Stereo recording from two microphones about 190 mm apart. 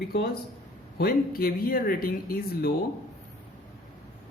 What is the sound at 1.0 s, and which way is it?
Speech, 50° left (ahead or behind).